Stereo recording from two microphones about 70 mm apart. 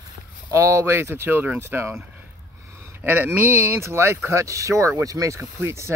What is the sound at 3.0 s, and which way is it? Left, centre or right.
Speech, right.